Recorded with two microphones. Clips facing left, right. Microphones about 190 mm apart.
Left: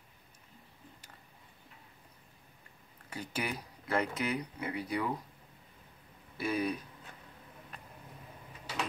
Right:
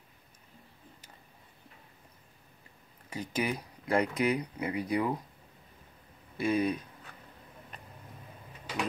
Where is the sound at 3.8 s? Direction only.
15° right (ahead or behind).